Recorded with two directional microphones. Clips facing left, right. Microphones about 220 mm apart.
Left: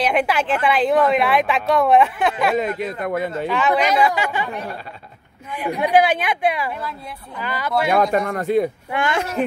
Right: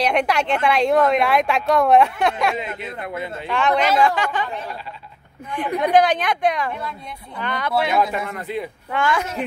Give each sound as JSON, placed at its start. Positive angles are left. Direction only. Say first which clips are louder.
{"t": 0.0, "sound": "a woman's voice", "louder": "even", "side_deg": 5}
{"t": 2.5, "sound": "speech", "louder": "left 7 dB", "side_deg": 45}
{"t": 3.4, "sound": "a woman's voice", "louder": "right 1 dB", "side_deg": 5}
{"t": 8.0, "sound": "speech", "louder": "left 4 dB", "side_deg": 45}
{"t": 8.9, "sound": "a woman's voice", "louder": "right 2 dB", "side_deg": 20}